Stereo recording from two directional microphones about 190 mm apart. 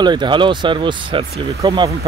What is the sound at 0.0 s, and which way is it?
Speech, 25° right (ahead or behind).